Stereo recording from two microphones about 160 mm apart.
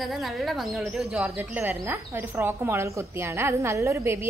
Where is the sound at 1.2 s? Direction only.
15° right (ahead or behind).